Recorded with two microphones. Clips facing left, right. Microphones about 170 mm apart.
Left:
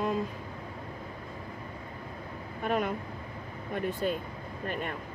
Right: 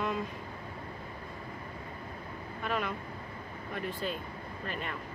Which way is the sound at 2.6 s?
45° left (ahead or behind).